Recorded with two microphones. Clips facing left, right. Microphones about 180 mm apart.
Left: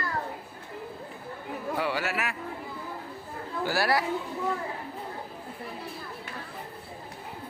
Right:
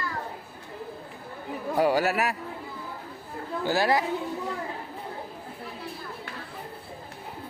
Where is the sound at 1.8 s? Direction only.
40° right (ahead or behind).